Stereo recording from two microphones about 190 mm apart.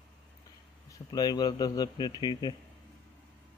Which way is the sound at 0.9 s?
20° left (ahead or behind).